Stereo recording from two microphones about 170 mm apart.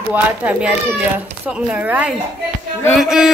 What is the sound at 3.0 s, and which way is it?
Music, centre (ahead or behind).